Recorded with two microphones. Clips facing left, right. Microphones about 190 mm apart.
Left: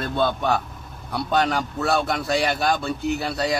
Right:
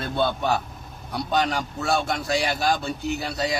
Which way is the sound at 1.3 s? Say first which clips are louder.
Left 2 dB; centre (ahead or behind).